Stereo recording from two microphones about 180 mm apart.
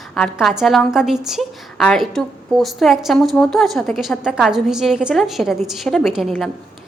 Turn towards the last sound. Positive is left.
turn(degrees=0)  # may be behind; listen again after turning